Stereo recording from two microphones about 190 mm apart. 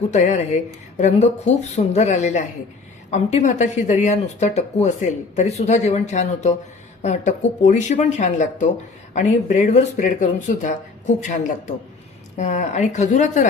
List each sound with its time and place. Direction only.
0.1 s speech: 40° left (ahead or behind)